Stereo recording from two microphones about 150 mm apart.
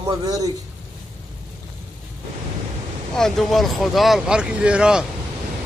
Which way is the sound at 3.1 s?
Centre (ahead or behind).